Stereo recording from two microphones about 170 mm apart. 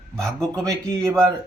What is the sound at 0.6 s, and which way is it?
Speech, 20° right (ahead or behind).